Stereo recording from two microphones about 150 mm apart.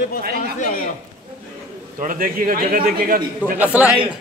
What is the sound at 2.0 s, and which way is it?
A man's voice, 65° right (ahead or behind).